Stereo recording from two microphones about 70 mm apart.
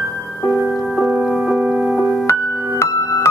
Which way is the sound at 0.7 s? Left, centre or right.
Centre.